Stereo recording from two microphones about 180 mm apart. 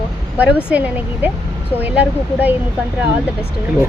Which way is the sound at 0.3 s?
10° right (ahead or behind).